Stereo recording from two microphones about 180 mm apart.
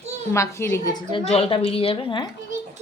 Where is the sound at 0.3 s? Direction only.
15° left (ahead or behind).